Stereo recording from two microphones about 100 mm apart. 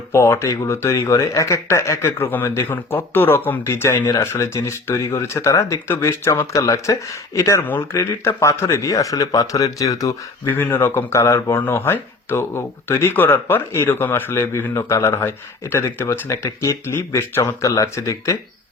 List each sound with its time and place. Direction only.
0.1 s speech: 30° left (ahead or behind)
10.5 s speech: 20° left (ahead or behind)